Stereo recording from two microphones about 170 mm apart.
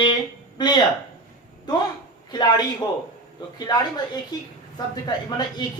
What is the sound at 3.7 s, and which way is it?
Speech, 25° left (ahead or behind).